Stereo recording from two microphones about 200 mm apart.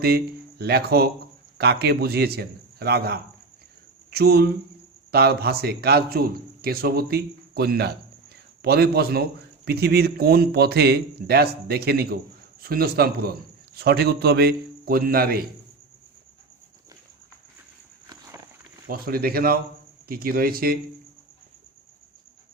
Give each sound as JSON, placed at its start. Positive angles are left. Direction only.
{"t": 0.6, "sound": "a man's voice", "side_deg": -55}
{"t": 18.9, "sound": "a man's voice", "side_deg": -45}